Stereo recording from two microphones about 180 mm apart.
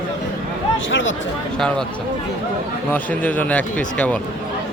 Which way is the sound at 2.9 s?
10° left (ahead or behind).